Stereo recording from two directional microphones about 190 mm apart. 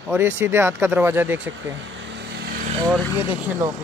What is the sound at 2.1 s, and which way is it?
Vehicle, 60° right (ahead or behind).